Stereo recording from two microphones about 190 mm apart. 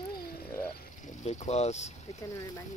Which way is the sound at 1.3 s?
35° left (ahead or behind).